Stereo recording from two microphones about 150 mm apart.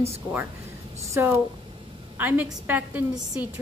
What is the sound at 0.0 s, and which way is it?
Speech, 10° right (ahead or behind).